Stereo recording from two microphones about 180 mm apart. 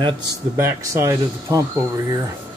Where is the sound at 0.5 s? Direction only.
15° right (ahead or behind).